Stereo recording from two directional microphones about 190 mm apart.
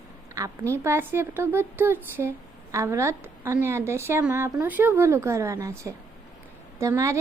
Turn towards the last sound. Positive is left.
turn(degrees=-15)  # may be behind; listen again after turning